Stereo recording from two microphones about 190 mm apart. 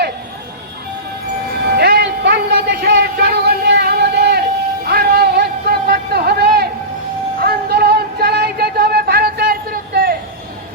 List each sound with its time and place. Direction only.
1.7 s music: 60° right (ahead or behind)
4.9 s a sound: 55° right (ahead or behind)
7.4 s music: 55° right (ahead or behind)